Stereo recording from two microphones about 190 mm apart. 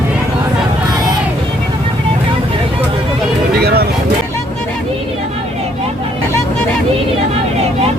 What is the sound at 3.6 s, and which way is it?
Vehicle, 60° right (ahead or behind).